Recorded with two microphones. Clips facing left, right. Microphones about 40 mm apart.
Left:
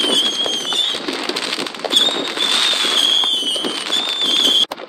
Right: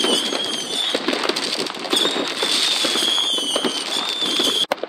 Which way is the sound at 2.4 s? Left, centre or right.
Left.